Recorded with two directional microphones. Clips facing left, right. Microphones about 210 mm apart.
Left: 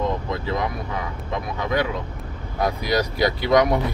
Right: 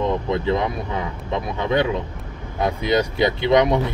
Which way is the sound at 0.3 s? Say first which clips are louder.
Right 5 dB; 25° right (ahead or behind).